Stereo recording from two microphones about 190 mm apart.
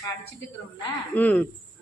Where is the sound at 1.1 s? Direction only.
10° left (ahead or behind).